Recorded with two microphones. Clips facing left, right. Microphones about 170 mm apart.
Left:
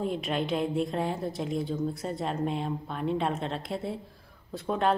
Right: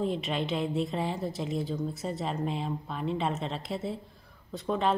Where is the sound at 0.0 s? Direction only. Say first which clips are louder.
Even; centre (ahead or behind).